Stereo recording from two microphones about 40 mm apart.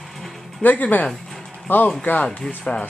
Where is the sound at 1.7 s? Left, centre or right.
Left.